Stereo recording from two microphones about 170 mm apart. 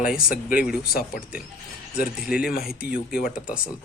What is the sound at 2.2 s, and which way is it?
Speech, 5° right (ahead or behind).